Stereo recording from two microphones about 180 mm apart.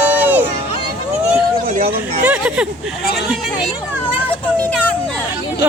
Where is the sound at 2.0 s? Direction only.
5° right (ahead or behind).